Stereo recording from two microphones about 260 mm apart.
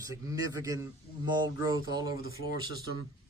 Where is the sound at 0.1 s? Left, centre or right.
Centre.